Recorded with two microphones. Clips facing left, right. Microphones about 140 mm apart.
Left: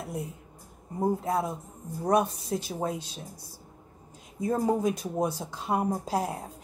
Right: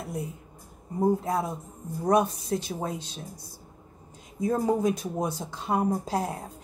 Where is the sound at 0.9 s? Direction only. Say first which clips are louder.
Right 2 dB; 5° left (ahead or behind).